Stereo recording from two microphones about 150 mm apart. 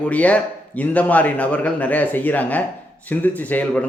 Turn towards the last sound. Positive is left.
turn(degrees=10)  # may be behind; listen again after turning